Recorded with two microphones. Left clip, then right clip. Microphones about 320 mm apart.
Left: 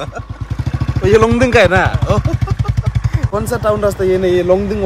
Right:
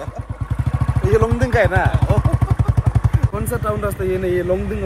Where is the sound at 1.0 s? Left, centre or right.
Left.